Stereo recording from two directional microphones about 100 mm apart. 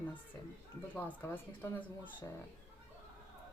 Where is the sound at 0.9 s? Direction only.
20° left (ahead or behind).